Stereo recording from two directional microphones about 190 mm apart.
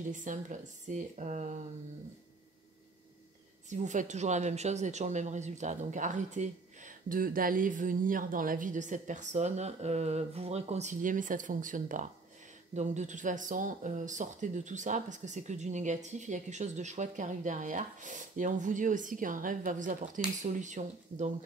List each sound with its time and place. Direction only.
0.1 s speech: 40° right (ahead or behind)
3.7 s speech: 40° right (ahead or behind)